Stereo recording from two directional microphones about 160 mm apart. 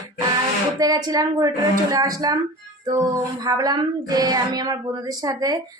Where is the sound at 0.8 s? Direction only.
25° right (ahead or behind).